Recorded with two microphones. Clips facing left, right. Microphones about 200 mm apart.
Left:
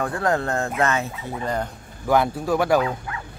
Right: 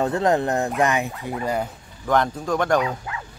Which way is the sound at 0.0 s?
20° right (ahead or behind).